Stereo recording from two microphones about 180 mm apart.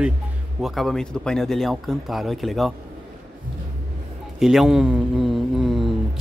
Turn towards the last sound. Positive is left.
turn(degrees=0)  # may be behind; listen again after turning